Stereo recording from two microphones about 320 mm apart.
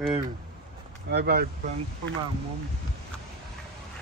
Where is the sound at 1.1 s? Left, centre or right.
Right.